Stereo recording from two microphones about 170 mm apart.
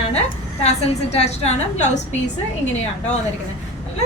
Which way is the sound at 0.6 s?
40° left (ahead or behind).